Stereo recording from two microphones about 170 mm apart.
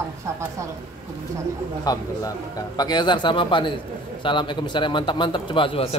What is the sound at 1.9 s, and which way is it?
A man's voice, 20° left (ahead or behind).